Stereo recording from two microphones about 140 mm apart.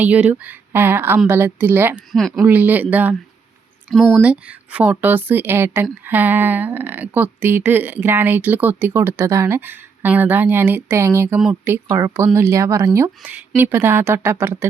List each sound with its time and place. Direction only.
0.0 s speech: 10° right (ahead or behind)